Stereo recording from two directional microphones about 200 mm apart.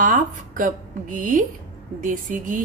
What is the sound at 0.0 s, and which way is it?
A woman's voice, 40° right (ahead or behind).